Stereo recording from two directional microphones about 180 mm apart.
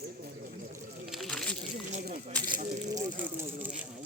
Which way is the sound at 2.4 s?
50° right (ahead or behind).